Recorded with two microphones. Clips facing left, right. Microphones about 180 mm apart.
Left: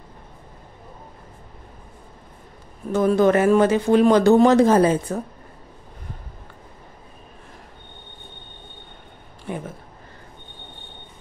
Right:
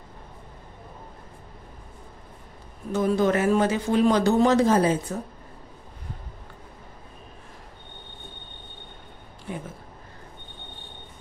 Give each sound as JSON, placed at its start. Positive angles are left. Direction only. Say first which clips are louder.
{"t": 2.9, "sound": "speech", "louder": "left 5 dB", "side_deg": 55}